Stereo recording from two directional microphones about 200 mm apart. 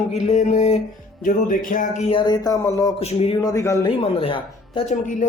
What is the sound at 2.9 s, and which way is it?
Speech, 30° left (ahead or behind).